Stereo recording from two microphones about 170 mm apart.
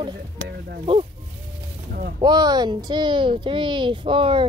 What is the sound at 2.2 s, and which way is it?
Speech, 25° right (ahead or behind).